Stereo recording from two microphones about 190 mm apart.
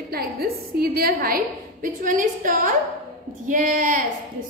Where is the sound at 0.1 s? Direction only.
55° right (ahead or behind).